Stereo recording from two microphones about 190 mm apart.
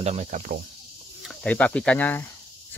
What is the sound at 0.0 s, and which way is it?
Cricket, 35° right (ahead or behind).